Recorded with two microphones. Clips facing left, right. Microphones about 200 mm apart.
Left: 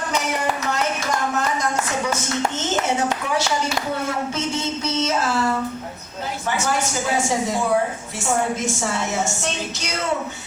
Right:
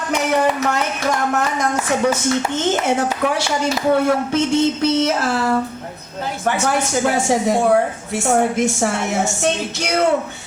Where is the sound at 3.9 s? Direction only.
60° right (ahead or behind).